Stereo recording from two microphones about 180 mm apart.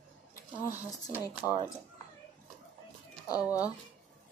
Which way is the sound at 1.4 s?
5° left (ahead or behind).